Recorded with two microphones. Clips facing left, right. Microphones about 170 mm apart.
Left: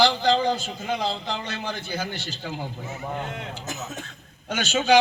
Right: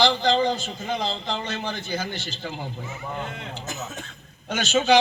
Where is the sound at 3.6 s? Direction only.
15° left (ahead or behind).